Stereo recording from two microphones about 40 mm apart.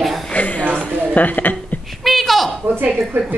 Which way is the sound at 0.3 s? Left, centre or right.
Left.